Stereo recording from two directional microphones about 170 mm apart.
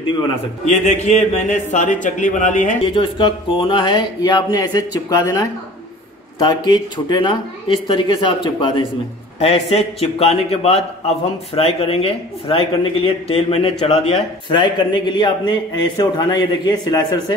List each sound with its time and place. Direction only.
1.0 s speech: 45° left (ahead or behind)
2.9 s speech: 30° left (ahead or behind)
9.4 s a man's voice: 35° left (ahead or behind)